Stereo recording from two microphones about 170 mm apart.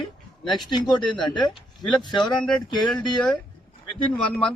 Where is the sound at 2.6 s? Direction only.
25° left (ahead or behind).